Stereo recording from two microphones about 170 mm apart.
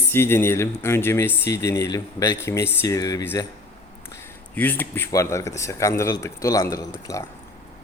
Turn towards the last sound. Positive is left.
turn(degrees=20)  # may be behind; listen again after turning